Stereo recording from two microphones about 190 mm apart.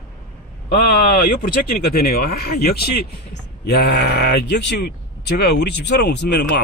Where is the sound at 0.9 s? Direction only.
50° left (ahead or behind).